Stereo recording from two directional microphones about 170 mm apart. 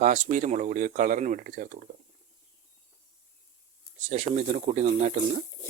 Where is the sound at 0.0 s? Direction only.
50° right (ahead or behind).